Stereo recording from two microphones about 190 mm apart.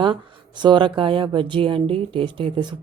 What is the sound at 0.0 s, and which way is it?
Speech, 25° right (ahead or behind).